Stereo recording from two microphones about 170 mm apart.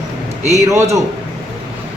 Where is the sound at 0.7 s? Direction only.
15° right (ahead or behind).